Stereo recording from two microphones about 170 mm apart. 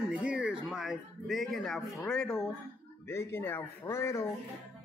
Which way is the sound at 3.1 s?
15° left (ahead or behind).